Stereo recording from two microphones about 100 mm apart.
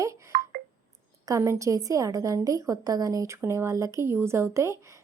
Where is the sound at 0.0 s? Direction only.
30° right (ahead or behind).